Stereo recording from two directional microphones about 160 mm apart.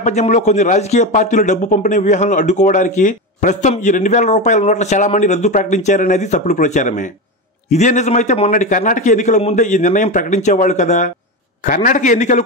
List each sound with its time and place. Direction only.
0.0 s a man's voice: 45° left (ahead or behind)